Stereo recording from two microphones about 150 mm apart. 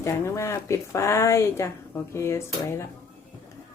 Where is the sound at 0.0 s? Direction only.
20° left (ahead or behind).